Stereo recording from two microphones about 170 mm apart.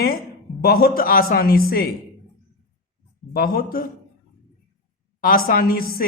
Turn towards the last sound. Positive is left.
turn(degrees=60)  # may be behind; listen again after turning